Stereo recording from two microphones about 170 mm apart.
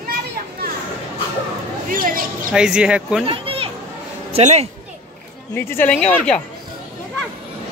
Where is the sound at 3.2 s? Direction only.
30° right (ahead or behind).